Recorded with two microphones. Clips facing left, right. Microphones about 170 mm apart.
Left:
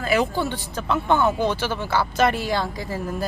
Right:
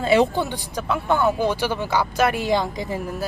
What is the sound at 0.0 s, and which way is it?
Speech, 25° right (ahead or behind).